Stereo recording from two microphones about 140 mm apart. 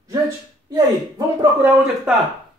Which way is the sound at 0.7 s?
25° right (ahead or behind).